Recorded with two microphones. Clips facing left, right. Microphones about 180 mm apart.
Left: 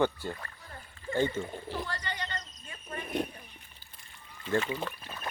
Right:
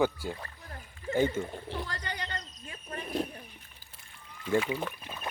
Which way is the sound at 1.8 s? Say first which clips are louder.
Left 1 dB; 40° right (ahead or behind).